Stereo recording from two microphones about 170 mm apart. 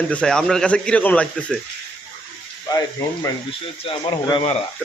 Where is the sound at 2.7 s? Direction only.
20° left (ahead or behind).